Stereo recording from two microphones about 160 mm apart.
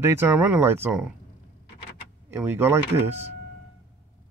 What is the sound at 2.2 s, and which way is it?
Speech, 10° right (ahead or behind).